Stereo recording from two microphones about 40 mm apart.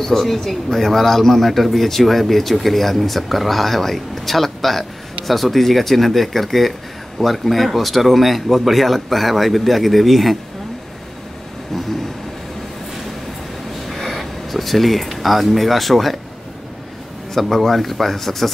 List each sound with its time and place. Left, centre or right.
0.0 s speech: centre
13.8 s speech: centre
17.3 s speech: centre